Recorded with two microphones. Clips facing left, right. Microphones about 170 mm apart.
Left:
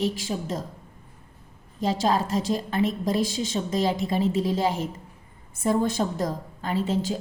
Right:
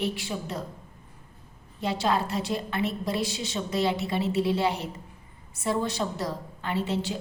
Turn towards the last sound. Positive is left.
turn(degrees=45)  # may be behind; listen again after turning